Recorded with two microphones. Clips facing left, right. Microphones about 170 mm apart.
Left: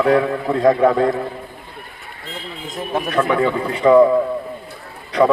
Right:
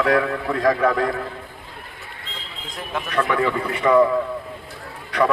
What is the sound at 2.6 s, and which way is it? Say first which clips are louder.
Speech: left 6 dB; 20° left (ahead or behind).